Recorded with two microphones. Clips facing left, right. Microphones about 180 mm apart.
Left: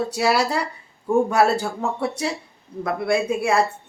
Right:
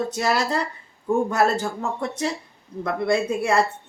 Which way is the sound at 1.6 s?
10° left (ahead or behind).